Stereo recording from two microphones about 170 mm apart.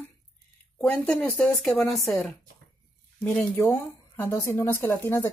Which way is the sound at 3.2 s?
10° left (ahead or behind).